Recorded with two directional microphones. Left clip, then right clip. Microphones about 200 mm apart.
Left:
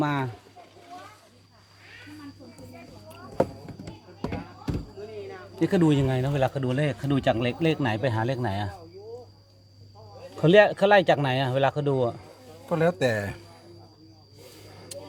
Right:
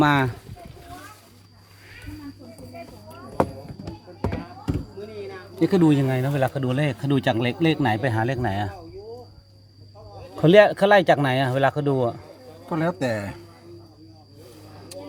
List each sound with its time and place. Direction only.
0.0 s speech: 35° right (ahead or behind)
5.5 s speech: centre (ahead or behind)
10.3 s speech: 10° right (ahead or behind)
12.6 s a man's voice: 45° left (ahead or behind)